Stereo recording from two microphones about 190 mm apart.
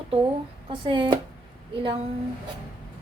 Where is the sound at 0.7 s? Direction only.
25° right (ahead or behind).